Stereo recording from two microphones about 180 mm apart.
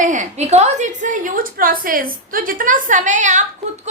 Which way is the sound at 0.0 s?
45° right (ahead or behind).